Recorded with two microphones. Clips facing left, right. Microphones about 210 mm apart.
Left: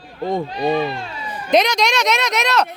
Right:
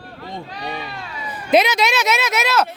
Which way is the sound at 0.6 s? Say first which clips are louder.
Left 12 dB; 25° left (ahead or behind).